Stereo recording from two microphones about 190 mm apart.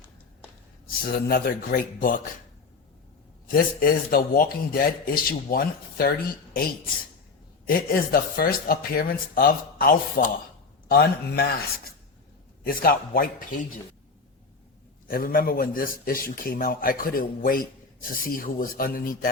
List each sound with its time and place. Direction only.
1.0 s speech: 50° left (ahead or behind)
3.5 s speech: 50° left (ahead or behind)
7.7 s a man's voice: 50° left (ahead or behind)
15.0 s speech: 50° left (ahead or behind)